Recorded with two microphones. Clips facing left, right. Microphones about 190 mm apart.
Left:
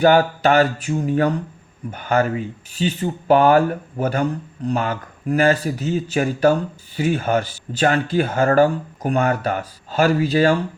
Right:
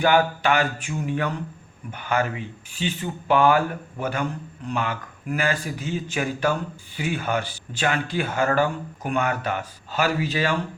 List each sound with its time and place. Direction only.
0.0 s speech: 40° left (ahead or behind)